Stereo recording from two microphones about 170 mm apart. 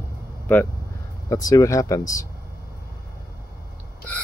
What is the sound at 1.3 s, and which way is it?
Speech, 20° left (ahead or behind).